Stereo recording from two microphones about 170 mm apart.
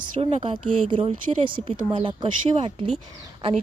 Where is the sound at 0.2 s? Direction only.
35° right (ahead or behind).